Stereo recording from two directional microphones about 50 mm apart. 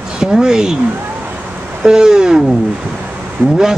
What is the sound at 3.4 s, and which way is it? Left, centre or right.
Speech, right.